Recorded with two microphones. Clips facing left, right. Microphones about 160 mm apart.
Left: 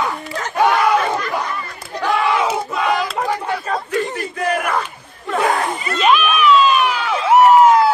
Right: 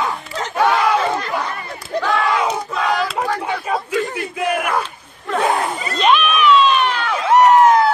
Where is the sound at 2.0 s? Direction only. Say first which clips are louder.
Left 2 dB; 10° left (ahead or behind).